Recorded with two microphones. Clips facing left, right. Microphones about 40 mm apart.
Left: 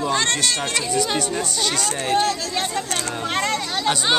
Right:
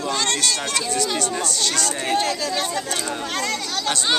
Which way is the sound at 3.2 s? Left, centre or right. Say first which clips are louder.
Left 3 dB; left.